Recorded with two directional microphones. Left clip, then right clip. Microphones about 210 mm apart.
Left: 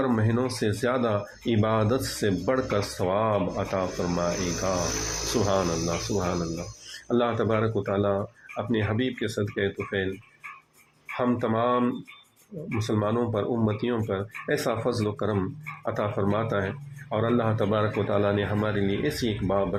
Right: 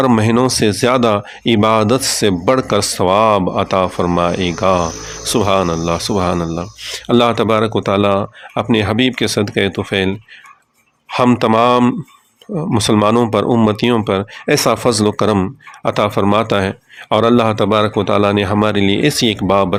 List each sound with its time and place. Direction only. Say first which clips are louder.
0.0 s speech: right 13 dB; 35° right (ahead or behind)
11.2 s speech: right 14 dB; 40° right (ahead or behind)